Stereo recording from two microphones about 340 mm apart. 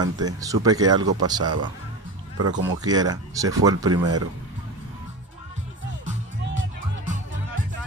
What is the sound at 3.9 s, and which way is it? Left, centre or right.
Speech, right.